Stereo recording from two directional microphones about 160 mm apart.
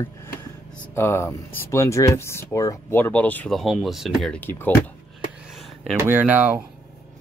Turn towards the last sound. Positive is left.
turn(degrees=-10)  # may be behind; listen again after turning